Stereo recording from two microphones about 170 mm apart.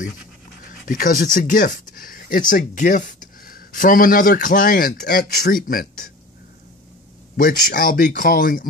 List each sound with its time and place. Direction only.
0.8 s speech: 55° left (ahead or behind)
7.3 s speech: 55° left (ahead or behind)